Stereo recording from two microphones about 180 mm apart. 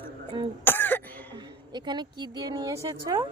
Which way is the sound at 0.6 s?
10° left (ahead or behind).